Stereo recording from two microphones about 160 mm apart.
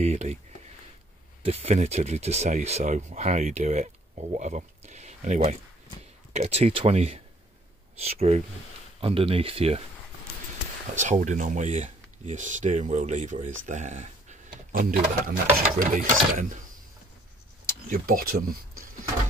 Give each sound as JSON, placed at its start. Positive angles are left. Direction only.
{"t": 0.0, "sound": "speech", "side_deg": -45}
{"t": 1.4, "sound": "speech", "side_deg": -35}
{"t": 11.0, "sound": "speech", "side_deg": -50}
{"t": 17.6, "sound": "speech", "side_deg": -65}